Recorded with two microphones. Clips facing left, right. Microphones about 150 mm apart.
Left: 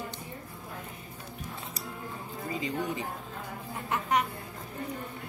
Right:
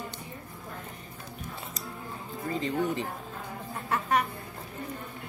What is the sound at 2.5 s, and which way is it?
Speech, 10° left (ahead or behind).